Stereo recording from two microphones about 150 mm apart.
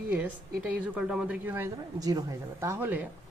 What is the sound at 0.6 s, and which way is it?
Speech, 10° right (ahead or behind).